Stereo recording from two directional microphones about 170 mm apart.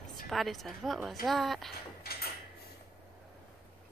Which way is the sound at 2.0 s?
65° left (ahead or behind).